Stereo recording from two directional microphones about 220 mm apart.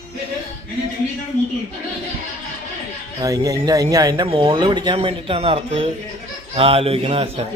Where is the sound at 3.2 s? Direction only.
15° right (ahead or behind).